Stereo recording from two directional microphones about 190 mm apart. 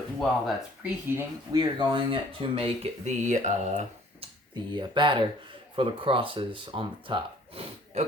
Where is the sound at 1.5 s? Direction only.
25° right (ahead or behind); by 3.9 s 40° right (ahead or behind).